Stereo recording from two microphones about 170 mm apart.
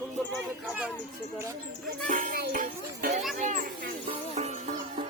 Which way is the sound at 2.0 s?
50° right (ahead or behind).